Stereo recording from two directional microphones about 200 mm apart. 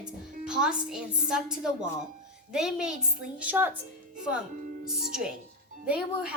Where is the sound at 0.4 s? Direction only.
5° right (ahead or behind).